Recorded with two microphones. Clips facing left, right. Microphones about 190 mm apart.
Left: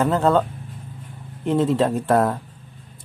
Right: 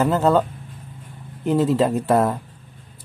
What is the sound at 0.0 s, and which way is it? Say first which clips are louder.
Speech: right 1 dB; centre (ahead or behind).